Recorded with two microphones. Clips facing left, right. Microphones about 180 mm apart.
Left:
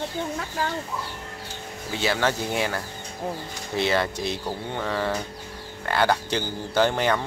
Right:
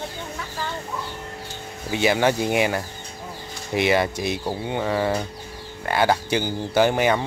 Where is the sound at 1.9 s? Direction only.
15° right (ahead or behind).